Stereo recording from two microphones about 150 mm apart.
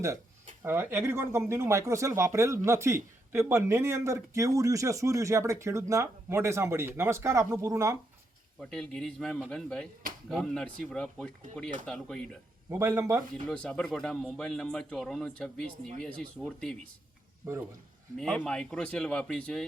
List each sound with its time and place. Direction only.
0.6 s speech: 15° right (ahead or behind)
8.7 s speech: 5° left (ahead or behind)
12.7 s speech: 20° right (ahead or behind)
13.5 s speech: 5° left (ahead or behind)
18.2 s speech: 5° left (ahead or behind)